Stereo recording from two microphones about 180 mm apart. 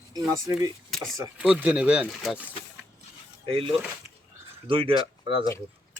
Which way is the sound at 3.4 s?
30° right (ahead or behind).